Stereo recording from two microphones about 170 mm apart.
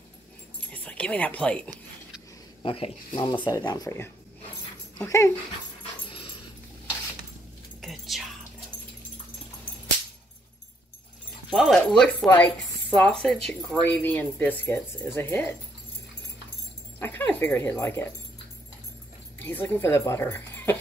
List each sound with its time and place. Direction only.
0.7 s speech: 5° left (ahead or behind)
2.6 s speech: 30° left (ahead or behind); by 5.3 s 15° left (ahead or behind)
6.0 s dog: 30° left (ahead or behind)
7.8 s music: centre (ahead or behind)
11.5 s speech: centre (ahead or behind)
17.0 s speech: 10° left (ahead or behind)
19.3 s speech: 10° left (ahead or behind)